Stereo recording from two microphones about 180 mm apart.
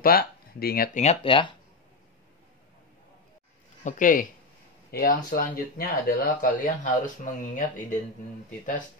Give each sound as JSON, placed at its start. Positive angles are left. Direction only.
{"t": 0.0, "sound": "speech", "side_deg": 55}
{"t": 0.9, "sound": "speech", "side_deg": 35}
{"t": 3.8, "sound": "speech", "side_deg": 50}